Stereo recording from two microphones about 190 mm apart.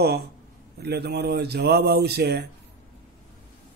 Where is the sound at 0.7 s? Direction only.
60° right (ahead or behind).